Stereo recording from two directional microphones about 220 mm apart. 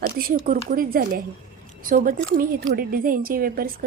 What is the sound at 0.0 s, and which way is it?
A woman's voice, 40° right (ahead or behind).